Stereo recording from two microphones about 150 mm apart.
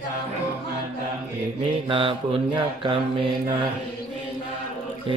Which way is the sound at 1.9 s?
35° right (ahead or behind).